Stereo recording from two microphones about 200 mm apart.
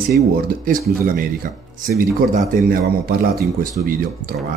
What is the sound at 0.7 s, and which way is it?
Speech, 45° right (ahead or behind).